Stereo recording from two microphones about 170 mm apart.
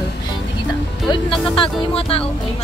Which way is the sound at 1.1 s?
30° left (ahead or behind).